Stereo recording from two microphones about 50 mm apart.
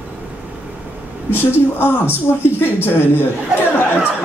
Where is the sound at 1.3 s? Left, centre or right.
Left.